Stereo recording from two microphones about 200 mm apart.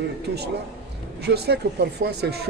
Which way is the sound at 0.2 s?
55° right (ahead or behind).